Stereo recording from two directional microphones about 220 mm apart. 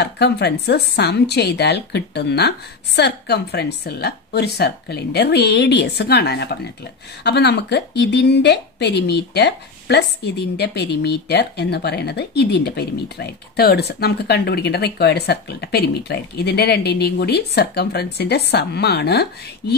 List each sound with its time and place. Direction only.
0.0 s a woman's voice: 50° left (ahead or behind)